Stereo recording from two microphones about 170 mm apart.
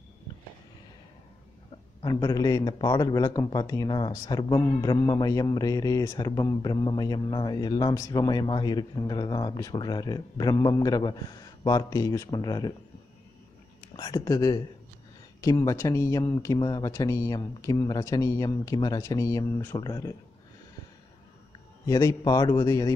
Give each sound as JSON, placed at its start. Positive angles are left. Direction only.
{"t": 2.0, "sound": "a man's voice", "side_deg": 25}
{"t": 13.9, "sound": "a man's voice", "side_deg": 25}
{"t": 21.8, "sound": "a man's voice", "side_deg": 20}